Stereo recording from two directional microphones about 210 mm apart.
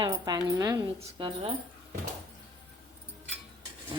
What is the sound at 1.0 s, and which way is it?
Speech, 25° right (ahead or behind).